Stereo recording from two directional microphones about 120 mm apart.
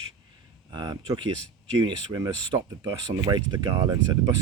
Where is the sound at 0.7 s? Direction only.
35° right (ahead or behind).